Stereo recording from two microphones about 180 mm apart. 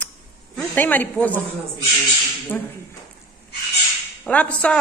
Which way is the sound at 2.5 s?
10° left (ahead or behind).